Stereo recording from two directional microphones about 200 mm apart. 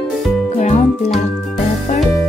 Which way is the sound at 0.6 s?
35° left (ahead or behind).